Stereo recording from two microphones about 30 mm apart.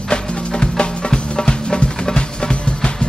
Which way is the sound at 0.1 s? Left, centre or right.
Left.